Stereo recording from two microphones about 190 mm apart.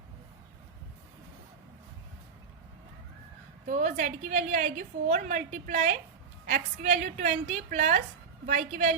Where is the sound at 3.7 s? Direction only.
40° right (ahead or behind).